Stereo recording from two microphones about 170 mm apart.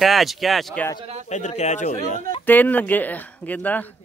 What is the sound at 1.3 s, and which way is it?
Speech, 45° left (ahead or behind).